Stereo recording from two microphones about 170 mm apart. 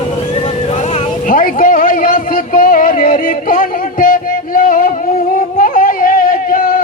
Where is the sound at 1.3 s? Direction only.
55° left (ahead or behind).